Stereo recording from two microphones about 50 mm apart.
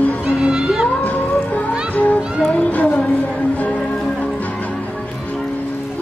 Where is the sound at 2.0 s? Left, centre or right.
Left.